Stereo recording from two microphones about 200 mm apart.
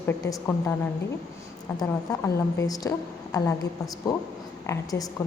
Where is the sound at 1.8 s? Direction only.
15° left (ahead or behind).